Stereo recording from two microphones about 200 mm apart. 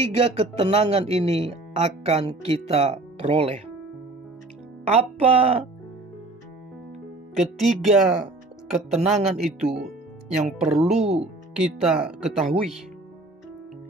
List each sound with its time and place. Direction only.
0.0 s speech: 30° right (ahead or behind)
4.8 s speech: 30° right (ahead or behind)
7.3 s speech: centre (ahead or behind)
9.7 s speech: 50° right (ahead or behind)
10.9 s speech: 30° right (ahead or behind)
11.1 s speech: 5° right (ahead or behind)